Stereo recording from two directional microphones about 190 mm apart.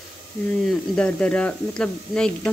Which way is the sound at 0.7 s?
5° left (ahead or behind).